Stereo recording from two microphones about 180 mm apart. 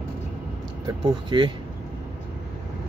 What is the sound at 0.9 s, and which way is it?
Speech, 25° right (ahead or behind).